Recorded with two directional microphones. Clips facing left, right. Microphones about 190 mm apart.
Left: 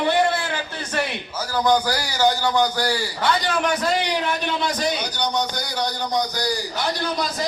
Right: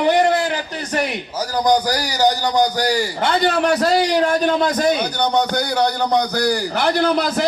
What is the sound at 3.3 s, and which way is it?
A man's voice, 35° right (ahead or behind).